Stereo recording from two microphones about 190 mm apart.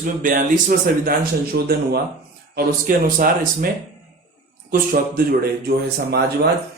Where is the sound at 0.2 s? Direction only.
45° right (ahead or behind).